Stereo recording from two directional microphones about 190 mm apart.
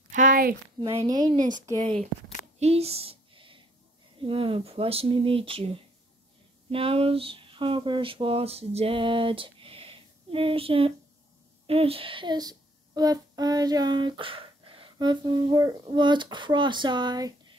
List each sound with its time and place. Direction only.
0.1 s a sound: 45° right (ahead or behind)
0.7 s speech: 20° right (ahead or behind)
1.3 s speech: 40° right (ahead or behind)
1.7 s speech: 25° right (ahead or behind)
2.6 s a sound: 30° right (ahead or behind)
4.2 s speech: 30° right (ahead or behind)